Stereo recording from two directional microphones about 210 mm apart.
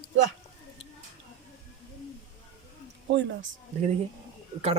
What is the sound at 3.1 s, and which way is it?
Speech, 55° right (ahead or behind).